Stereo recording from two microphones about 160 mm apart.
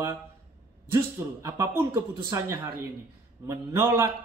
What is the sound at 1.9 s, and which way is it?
Speech, 30° right (ahead or behind).